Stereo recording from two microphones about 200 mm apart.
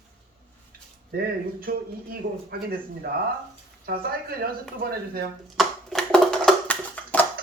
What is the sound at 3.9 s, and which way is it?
Speech, 50° right (ahead or behind).